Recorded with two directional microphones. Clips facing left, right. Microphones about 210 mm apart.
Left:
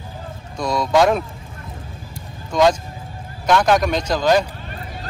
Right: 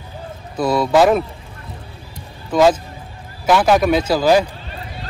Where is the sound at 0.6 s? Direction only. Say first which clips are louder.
Right 3 dB; 5° right (ahead or behind).